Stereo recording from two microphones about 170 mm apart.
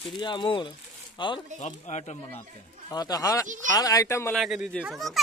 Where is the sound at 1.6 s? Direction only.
45° left (ahead or behind).